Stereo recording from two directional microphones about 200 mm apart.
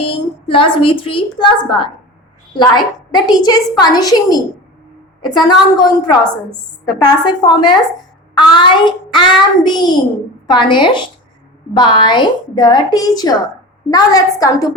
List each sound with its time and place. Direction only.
0.0 s a woman's voice: 25° left (ahead or behind)
2.5 s a woman's voice: 20° left (ahead or behind)